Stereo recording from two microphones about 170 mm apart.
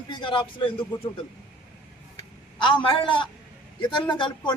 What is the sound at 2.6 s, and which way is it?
Speech, 30° left (ahead or behind).